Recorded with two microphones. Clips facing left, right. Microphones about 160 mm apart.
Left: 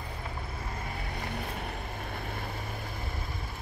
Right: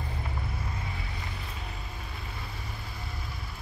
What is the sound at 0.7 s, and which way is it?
Vehicle, 45° left (ahead or behind).